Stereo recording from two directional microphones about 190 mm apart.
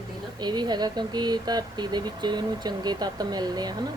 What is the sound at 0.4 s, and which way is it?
Speech, 20° right (ahead or behind).